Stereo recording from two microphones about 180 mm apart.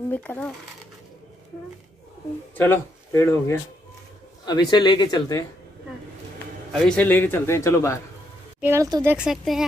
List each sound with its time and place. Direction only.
0.1 s a man's voice: 10° left (ahead or behind)
2.5 s a man's voice: 15° left (ahead or behind)
6.7 s a man's voice: 10° left (ahead or behind)
8.5 s speech: 15° right (ahead or behind)